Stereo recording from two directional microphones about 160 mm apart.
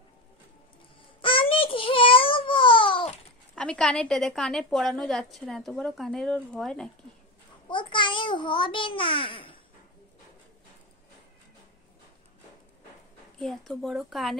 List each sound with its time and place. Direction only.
1.2 s babbling: 35° left (ahead or behind)
3.5 s a woman's voice: 5° left (ahead or behind)
7.6 s a child's voice: 30° left (ahead or behind)
13.4 s a woman's voice: centre (ahead or behind)